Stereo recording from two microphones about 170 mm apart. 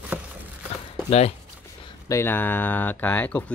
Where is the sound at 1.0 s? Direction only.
40° left (ahead or behind).